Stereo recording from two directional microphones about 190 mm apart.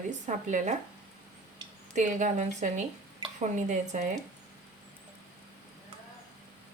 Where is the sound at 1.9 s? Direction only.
40° right (ahead or behind).